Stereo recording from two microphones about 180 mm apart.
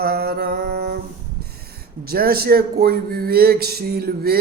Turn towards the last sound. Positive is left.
turn(degrees=-60)  # may be behind; listen again after turning